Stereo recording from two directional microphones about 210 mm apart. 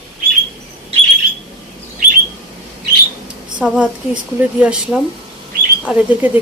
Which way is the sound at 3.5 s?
5° right (ahead or behind).